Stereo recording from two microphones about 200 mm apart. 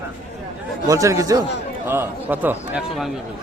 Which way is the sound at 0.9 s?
15° right (ahead or behind).